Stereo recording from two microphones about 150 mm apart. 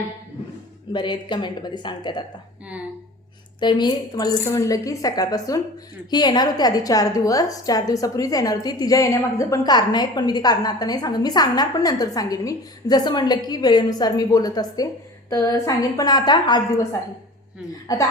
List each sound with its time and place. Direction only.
0.9 s a woman's voice: 30° left (ahead or behind)
3.6 s a woman's voice: 30° left (ahead or behind)
17.8 s a woman's voice: 25° left (ahead or behind)